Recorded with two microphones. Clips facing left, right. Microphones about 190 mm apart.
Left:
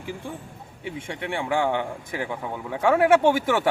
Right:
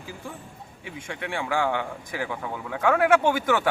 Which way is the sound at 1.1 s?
20° left (ahead or behind).